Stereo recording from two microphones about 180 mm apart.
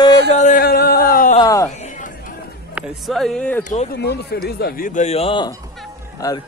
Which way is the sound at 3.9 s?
65° left (ahead or behind).